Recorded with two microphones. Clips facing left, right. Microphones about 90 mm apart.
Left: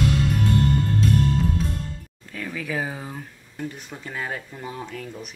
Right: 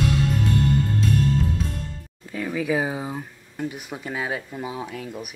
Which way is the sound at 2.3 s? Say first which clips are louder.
Right 5 dB; 10° right (ahead or behind).